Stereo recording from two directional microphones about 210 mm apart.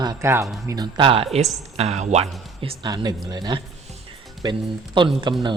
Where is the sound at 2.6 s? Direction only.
20° right (ahead or behind).